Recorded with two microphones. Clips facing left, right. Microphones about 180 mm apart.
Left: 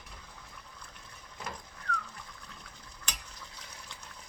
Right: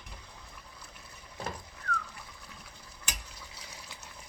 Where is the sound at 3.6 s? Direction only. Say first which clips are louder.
Right 1 dB; 5° right (ahead or behind).